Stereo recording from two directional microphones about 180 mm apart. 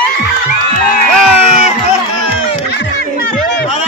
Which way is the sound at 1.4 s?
35° left (ahead or behind).